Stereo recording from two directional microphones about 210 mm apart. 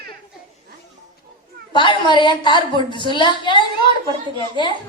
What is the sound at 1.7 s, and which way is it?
A woman's voice, 25° left (ahead or behind).